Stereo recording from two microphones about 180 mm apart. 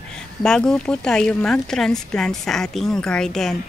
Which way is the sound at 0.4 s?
5° left (ahead or behind).